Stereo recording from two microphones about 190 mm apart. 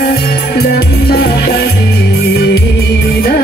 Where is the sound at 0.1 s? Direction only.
55° left (ahead or behind).